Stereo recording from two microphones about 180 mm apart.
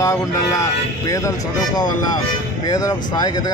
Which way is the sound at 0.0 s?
15° left (ahead or behind).